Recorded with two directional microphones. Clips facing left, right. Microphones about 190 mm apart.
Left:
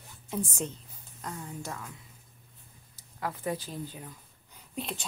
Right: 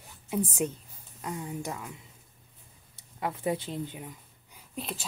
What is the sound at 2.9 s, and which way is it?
Speech, 20° right (ahead or behind).